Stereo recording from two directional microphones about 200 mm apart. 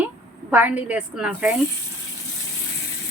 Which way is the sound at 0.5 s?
10° right (ahead or behind).